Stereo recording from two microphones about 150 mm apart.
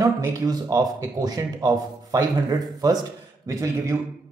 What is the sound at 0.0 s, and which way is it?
Speech, 20° right (ahead or behind).